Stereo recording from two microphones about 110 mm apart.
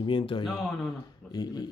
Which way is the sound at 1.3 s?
35° left (ahead or behind).